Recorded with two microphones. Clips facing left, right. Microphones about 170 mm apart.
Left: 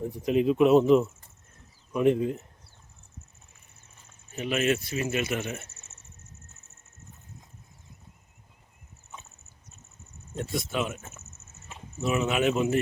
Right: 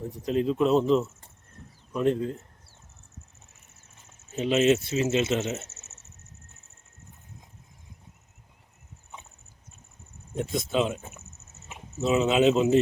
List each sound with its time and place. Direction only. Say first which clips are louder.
0.3 s speech: left 3 dB; 15° left (ahead or behind)
4.0 s speech: right 5 dB; 25° right (ahead or behind)
10.3 s speech: right 4 dB; 20° right (ahead or behind)